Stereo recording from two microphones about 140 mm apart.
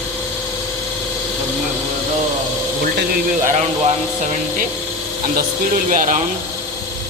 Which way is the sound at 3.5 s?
55° right (ahead or behind).